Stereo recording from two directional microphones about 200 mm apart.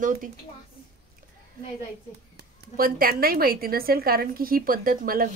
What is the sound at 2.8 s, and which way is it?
A woman's voice, 45° right (ahead or behind).